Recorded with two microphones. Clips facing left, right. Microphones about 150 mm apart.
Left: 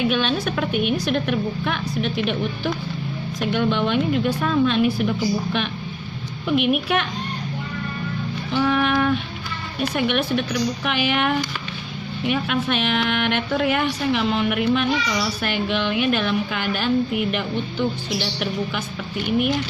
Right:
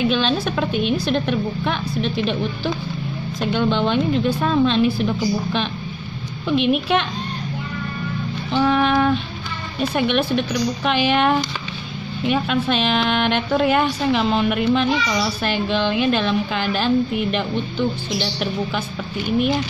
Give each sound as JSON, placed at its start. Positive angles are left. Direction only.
{"t": 0.0, "sound": "a child's voice", "side_deg": -30}
{"t": 8.5, "sound": "a child's voice", "side_deg": -30}